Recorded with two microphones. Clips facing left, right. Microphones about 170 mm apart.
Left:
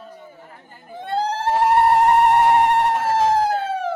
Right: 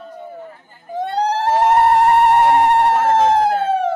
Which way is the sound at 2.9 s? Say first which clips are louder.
Right 4 dB; 65° right (ahead or behind).